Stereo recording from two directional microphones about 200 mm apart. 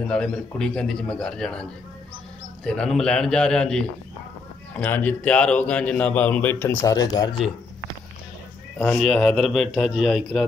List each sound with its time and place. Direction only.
0.1 s a man's voice: 5° left (ahead or behind)
8.7 s a man's voice: 5° left (ahead or behind)